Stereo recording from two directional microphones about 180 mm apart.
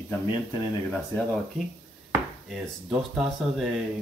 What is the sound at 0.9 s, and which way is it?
Speech, 5° left (ahead or behind).